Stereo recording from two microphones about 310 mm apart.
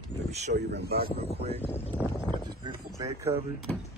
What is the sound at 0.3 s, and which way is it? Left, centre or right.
Speech, right.